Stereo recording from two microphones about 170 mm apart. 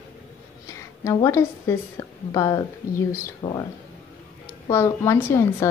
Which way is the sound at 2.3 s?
20° left (ahead or behind).